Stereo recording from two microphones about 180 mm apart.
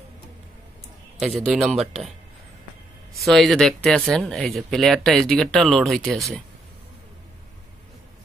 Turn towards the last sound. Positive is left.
turn(degrees=0)  # may be behind; listen again after turning